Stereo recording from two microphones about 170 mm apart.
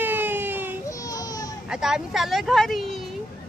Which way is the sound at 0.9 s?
20° left (ahead or behind).